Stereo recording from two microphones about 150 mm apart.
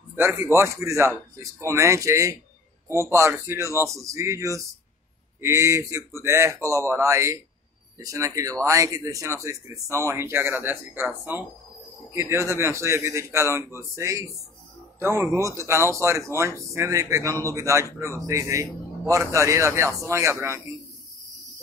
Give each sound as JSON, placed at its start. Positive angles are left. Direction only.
{"t": 0.1, "sound": "speech", "side_deg": -15}